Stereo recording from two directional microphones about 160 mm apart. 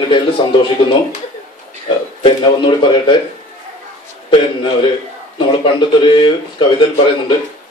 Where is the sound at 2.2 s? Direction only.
30° left (ahead or behind).